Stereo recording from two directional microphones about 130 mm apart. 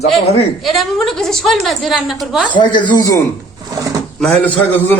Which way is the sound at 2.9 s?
25° left (ahead or behind).